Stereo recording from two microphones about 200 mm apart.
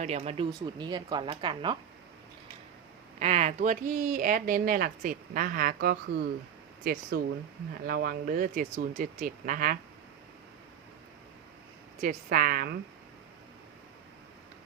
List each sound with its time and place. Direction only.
0.0 s speech: 30° right (ahead or behind)
3.2 s speech: 35° right (ahead or behind)
11.9 s speech: 40° right (ahead or behind)